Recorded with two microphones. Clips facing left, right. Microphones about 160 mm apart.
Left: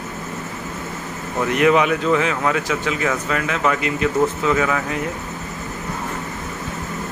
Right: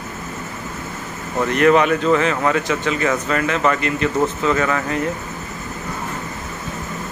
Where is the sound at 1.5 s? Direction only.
5° left (ahead or behind).